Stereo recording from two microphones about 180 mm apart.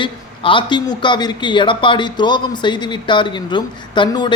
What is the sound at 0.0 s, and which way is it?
A man's voice, 30° left (ahead or behind).